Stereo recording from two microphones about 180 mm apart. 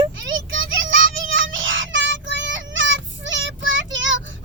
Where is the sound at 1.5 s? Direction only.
90° right.